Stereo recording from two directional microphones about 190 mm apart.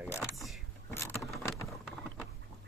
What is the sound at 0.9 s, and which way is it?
Vehicle, 15° left (ahead or behind).